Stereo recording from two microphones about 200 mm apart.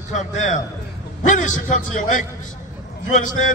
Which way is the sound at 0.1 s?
35° left (ahead or behind).